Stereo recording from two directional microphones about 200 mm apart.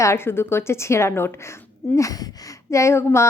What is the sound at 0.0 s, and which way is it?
Speech, 15° left (ahead or behind).